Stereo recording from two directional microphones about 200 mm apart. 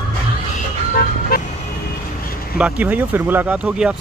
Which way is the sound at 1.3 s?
50° left (ahead or behind).